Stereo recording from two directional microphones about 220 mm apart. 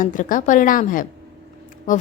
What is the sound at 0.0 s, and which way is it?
A woman's voice, 35° left (ahead or behind).